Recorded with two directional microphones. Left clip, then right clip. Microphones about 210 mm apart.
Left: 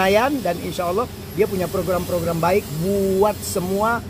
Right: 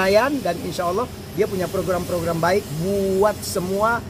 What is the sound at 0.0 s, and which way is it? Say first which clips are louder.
Speech: even; centre (ahead or behind).